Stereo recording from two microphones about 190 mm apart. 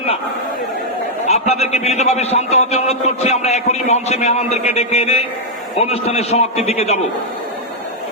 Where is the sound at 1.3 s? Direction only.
35° left (ahead or behind).